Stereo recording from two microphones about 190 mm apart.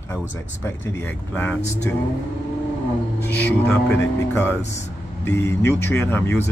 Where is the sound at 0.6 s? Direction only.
15° left (ahead or behind).